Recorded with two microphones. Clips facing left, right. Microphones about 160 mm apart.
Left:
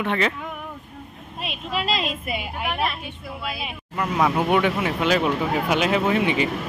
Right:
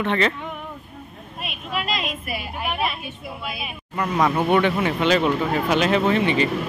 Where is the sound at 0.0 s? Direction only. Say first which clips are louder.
Right 2 dB; 5° left (ahead or behind).